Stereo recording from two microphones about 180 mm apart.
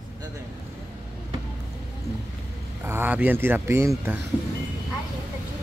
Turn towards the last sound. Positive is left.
turn(degrees=-15)  # may be behind; listen again after turning